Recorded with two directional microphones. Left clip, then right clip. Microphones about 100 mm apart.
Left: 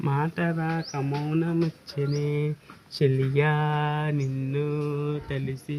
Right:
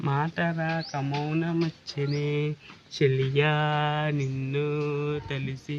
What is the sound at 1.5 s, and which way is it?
Speech, 30° right (ahead or behind).